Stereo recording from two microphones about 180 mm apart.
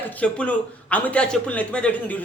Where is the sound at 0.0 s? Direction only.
10° left (ahead or behind).